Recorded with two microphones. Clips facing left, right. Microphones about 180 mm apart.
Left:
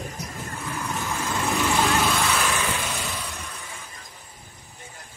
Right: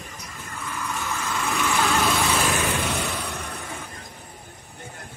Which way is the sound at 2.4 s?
45° right (ahead or behind).